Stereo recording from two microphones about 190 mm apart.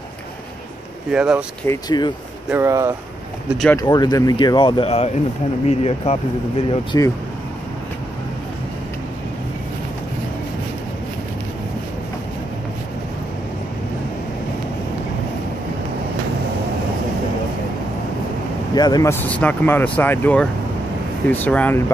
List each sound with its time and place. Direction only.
1.1 s speech: 5° right (ahead or behind)
1.7 s speech: 20° left (ahead or behind)
2.5 s speech: 15° right (ahead or behind)
3.4 s speech: centre (ahead or behind)
3.7 s speech: 20° left (ahead or behind)
6.7 s speech: 25° left (ahead or behind)
18.8 s speech: 20° left (ahead or behind)
19.2 s speech: 10° left (ahead or behind)